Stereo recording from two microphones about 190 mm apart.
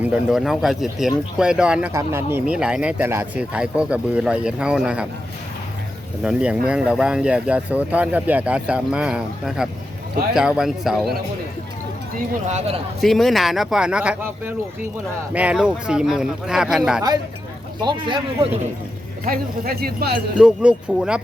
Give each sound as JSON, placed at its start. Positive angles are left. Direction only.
{"t": 0.0, "sound": "speech", "side_deg": -5}
{"t": 6.2, "sound": "speech", "side_deg": -5}
{"t": 12.5, "sound": "a man's voice", "side_deg": -35}
{"t": 13.0, "sound": "speech", "side_deg": 0}
{"t": 17.8, "sound": "speech", "side_deg": -25}
{"t": 19.2, "sound": "speech", "side_deg": -50}
{"t": 20.4, "sound": "speech", "side_deg": -5}